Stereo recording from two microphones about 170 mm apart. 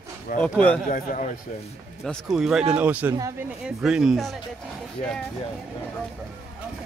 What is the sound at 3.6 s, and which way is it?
Speech, 5° right (ahead or behind).